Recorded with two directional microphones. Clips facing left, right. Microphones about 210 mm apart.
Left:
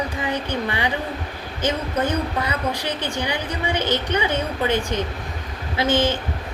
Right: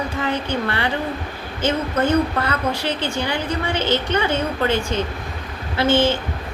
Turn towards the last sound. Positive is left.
turn(degrees=15)  # may be behind; listen again after turning